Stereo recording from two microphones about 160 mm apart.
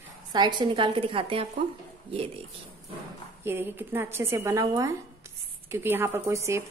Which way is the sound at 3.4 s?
15° right (ahead or behind).